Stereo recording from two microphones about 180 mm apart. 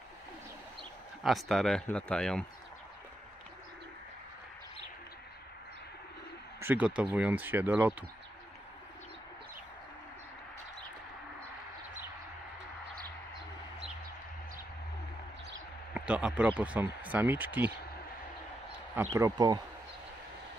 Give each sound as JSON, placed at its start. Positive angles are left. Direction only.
{"t": 1.2, "sound": "speech", "side_deg": 0}
{"t": 6.6, "sound": "speech", "side_deg": -10}
{"t": 15.9, "sound": "speech", "side_deg": -5}
{"t": 19.1, "sound": "speech", "side_deg": -20}